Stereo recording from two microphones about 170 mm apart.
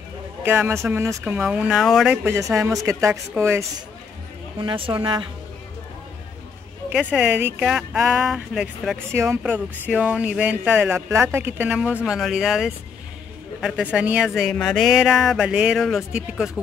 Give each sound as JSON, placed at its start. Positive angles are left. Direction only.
{"t": 0.4, "sound": "speech", "side_deg": -15}
{"t": 2.2, "sound": "speech", "side_deg": -15}
{"t": 4.6, "sound": "a woman's voice", "side_deg": -30}
{"t": 6.9, "sound": "speech", "side_deg": -5}
{"t": 9.1, "sound": "speech", "side_deg": -15}